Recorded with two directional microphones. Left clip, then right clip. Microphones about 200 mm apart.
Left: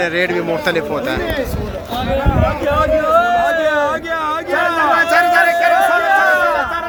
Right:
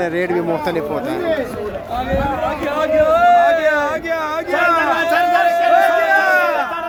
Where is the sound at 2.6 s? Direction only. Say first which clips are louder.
Right 1 dB; 20° right (ahead or behind).